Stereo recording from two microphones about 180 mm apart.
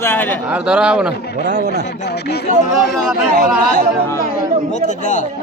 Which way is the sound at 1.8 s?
70° left (ahead or behind).